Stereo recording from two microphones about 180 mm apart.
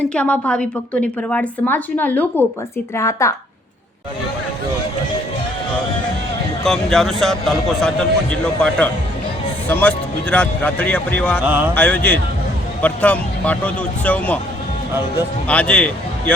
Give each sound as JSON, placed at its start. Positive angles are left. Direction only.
{"t": 0.1, "sound": "a woman's voice", "side_deg": 5}
{"t": 6.7, "sound": "a man's voice", "side_deg": 0}
{"t": 11.4, "sound": "speech", "side_deg": -10}
{"t": 11.7, "sound": "a woman's voice", "side_deg": 10}
{"t": 15.4, "sound": "a man's voice", "side_deg": 5}